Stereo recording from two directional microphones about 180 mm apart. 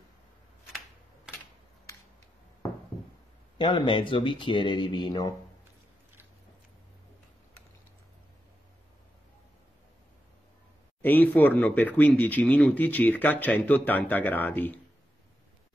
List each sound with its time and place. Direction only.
1.3 s a sound: 5° right (ahead or behind)
3.5 s speech: 25° left (ahead or behind)
11.0 s speech: 10° left (ahead or behind)